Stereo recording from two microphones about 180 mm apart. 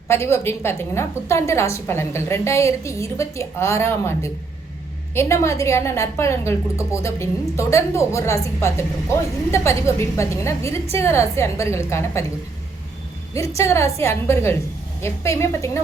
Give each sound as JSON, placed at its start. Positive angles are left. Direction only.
{"t": 0.1, "sound": "a woman's voice", "side_deg": 15}
{"t": 13.6, "sound": "a woman's voice", "side_deg": 15}